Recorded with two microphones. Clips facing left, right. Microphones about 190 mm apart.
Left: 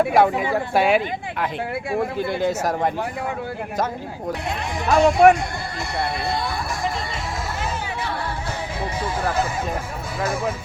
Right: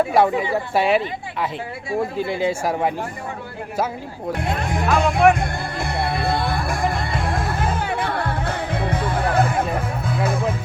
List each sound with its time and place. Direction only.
0.5 s speech: centre (ahead or behind)
4.4 s speech: 55° right (ahead or behind)
6.2 s music: 55° right (ahead or behind)